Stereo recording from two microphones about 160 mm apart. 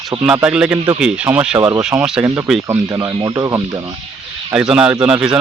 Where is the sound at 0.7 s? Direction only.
35° right (ahead or behind).